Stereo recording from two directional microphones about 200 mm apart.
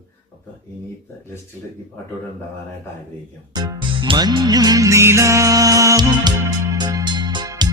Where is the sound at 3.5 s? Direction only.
20° right (ahead or behind).